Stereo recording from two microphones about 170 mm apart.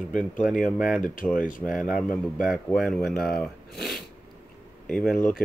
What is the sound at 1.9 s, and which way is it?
Speech, centre (ahead or behind).